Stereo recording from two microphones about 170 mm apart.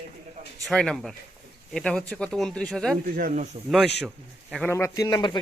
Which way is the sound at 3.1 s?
50° right (ahead or behind).